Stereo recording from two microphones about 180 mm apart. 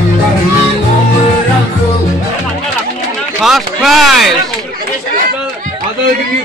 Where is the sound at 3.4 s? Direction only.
Centre (ahead or behind).